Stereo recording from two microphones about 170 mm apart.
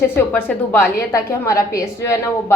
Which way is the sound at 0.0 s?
10° left (ahead or behind).